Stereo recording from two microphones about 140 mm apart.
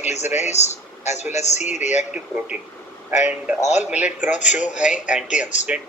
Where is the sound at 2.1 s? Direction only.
10° right (ahead or behind).